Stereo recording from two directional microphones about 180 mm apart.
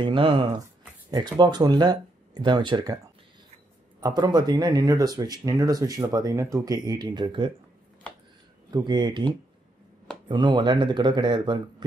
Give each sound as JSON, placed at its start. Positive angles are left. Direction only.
{"t": 0.0, "sound": "speech", "side_deg": -25}
{"t": 4.0, "sound": "speech", "side_deg": -20}
{"t": 8.6, "sound": "speech", "side_deg": -25}